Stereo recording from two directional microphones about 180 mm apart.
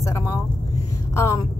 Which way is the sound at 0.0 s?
15° left (ahead or behind).